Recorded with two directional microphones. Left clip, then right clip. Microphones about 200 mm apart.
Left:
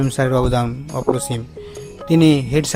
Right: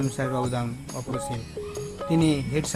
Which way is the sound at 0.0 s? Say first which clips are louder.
Left 10 dB; 45° left (ahead or behind).